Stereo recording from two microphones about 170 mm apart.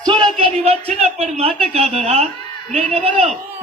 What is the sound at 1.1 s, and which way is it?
A man's voice, 40° right (ahead or behind).